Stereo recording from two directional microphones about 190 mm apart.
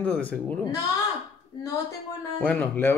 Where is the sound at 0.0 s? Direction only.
5° left (ahead or behind).